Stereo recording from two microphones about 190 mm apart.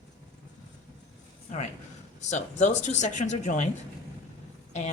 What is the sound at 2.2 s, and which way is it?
Speech, 40° left (ahead or behind).